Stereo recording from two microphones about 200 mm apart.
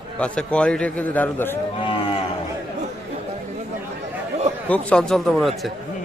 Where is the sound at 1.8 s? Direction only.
25° left (ahead or behind).